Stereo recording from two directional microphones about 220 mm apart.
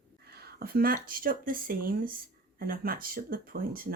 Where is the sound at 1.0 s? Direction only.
40° right (ahead or behind).